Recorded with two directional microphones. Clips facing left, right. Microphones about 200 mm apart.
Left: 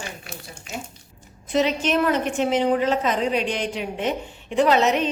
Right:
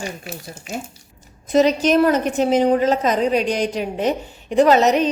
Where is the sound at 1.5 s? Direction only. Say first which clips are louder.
Right 6 dB; 40° right (ahead or behind).